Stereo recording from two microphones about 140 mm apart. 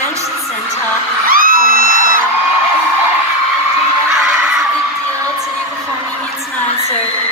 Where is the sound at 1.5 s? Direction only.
60° left (ahead or behind).